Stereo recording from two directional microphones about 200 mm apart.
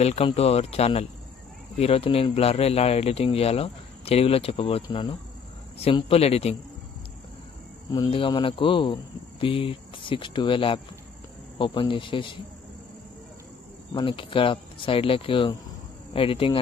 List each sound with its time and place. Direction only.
0.0 s speech: 30° left (ahead or behind)
7.9 s speech: 25° left (ahead or behind)
13.9 s speech: 25° left (ahead or behind)